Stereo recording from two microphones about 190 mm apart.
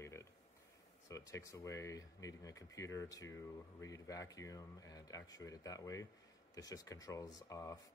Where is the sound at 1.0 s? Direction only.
15° left (ahead or behind).